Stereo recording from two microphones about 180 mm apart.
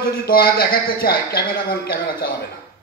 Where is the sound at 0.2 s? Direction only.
55° left (ahead or behind).